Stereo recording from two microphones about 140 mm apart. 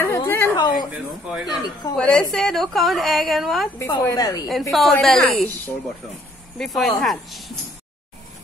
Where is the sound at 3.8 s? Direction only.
25° left (ahead or behind).